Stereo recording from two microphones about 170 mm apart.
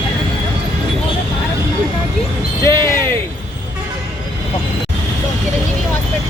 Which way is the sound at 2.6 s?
25° right (ahead or behind).